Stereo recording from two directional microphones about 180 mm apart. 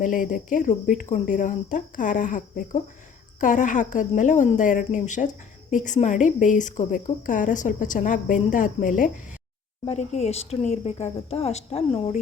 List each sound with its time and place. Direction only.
0.0 s a woman's voice: 50° left (ahead or behind)